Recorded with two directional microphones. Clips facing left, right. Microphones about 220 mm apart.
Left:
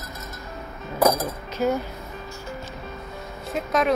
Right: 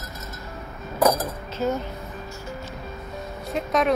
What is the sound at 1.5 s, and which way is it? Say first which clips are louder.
Speech: left 2 dB; 10° left (ahead or behind).